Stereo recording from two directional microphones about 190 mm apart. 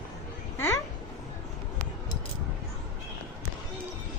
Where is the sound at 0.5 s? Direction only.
10° left (ahead or behind).